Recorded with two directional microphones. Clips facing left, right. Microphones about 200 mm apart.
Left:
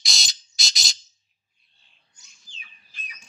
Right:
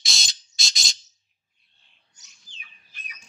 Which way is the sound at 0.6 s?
Centre (ahead or behind).